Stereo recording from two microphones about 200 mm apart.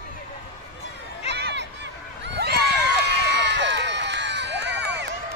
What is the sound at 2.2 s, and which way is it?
Crowd, 55° right (ahead or behind).